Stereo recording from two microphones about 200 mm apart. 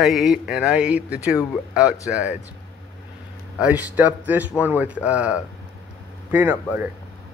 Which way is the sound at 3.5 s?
5° right (ahead or behind).